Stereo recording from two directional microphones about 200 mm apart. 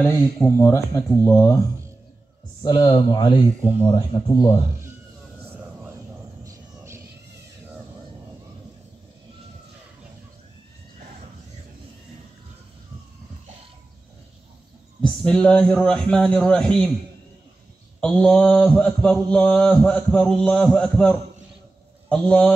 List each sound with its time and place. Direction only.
0.0 s speech: 10° left (ahead or behind)
2.6 s speech: 20° left (ahead or behind)
6.4 s a sound: 15° right (ahead or behind)
15.0 s a man's voice: 5° left (ahead or behind)
18.0 s a man's voice: 5° left (ahead or behind)